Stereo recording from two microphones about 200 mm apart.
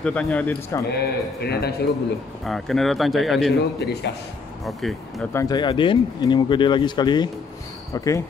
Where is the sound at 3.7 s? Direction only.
55° left (ahead or behind).